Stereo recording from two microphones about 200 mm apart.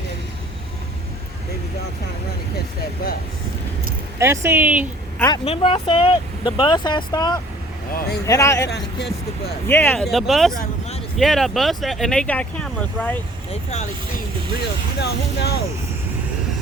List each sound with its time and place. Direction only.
4.2 s speech: 15° right (ahead or behind)
5.5 s speech: 30° left (ahead or behind)
7.9 s speech: 55° left (ahead or behind)
8.3 s speech: 15° left (ahead or behind)
8.7 s speech: 60° left (ahead or behind)
9.6 s speech: 10° left (ahead or behind)
10.5 s vehicle: 40° left (ahead or behind)
11.2 s speech: centre (ahead or behind)
13.5 s speech: 35° left (ahead or behind)
14.9 s speech: 55° left (ahead or behind)